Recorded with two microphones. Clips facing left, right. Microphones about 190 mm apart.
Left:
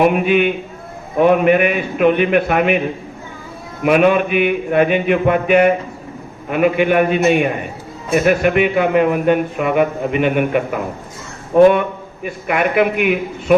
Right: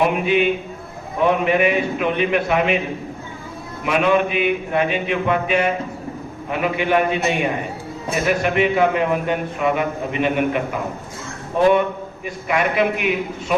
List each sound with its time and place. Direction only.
0.0 s a man's voice: 55° left (ahead or behind)
3.8 s a man's voice: 55° left (ahead or behind)